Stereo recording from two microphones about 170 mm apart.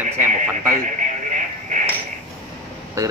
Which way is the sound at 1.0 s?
45° right (ahead or behind).